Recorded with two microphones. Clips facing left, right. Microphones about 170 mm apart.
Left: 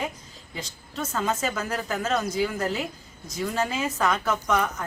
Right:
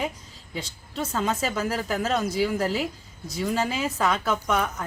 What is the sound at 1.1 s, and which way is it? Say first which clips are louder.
A woman's voice: right 1 dB; centre (ahead or behind).